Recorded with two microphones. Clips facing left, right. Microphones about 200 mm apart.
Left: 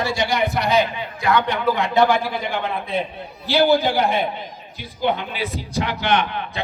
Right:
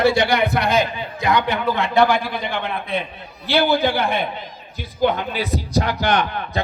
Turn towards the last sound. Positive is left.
turn(degrees=-40)  # may be behind; listen again after turning